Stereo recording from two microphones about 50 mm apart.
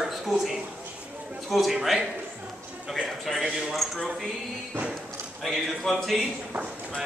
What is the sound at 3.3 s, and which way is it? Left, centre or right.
Speech, centre.